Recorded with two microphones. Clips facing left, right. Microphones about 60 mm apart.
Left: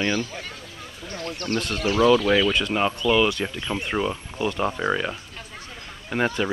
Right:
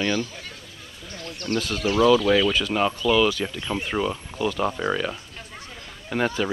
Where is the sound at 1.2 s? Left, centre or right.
Left.